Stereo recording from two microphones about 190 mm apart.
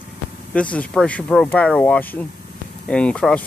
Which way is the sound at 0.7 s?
5° left (ahead or behind).